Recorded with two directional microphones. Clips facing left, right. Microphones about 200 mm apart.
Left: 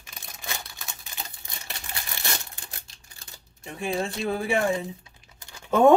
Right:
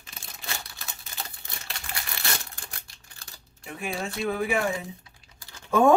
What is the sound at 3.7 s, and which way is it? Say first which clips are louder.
Speech: left 3 dB; 30° left (ahead or behind).